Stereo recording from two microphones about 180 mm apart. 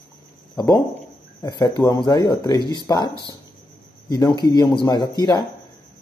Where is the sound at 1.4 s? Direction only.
25° left (ahead or behind).